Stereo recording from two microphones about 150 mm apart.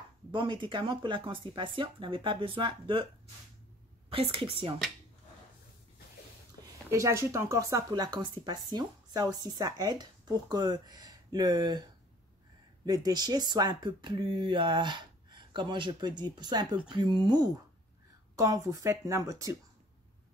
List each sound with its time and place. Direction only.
0.3 s speech: 35° right (ahead or behind)
4.1 s speech: 40° right (ahead or behind)
6.9 s speech: 20° right (ahead or behind)
12.8 s speech: 25° right (ahead or behind)